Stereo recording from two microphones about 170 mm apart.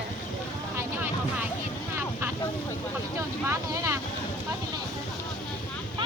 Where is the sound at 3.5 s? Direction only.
15° right (ahead or behind).